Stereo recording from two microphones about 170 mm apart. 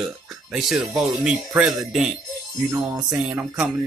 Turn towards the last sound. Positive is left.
turn(degrees=-10)  # may be behind; listen again after turning